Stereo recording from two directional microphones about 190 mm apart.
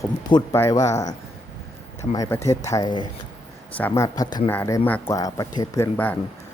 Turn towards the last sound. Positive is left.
turn(degrees=10)  # may be behind; listen again after turning